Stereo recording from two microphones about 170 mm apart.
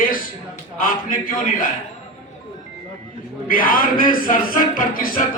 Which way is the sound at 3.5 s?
55° left (ahead or behind).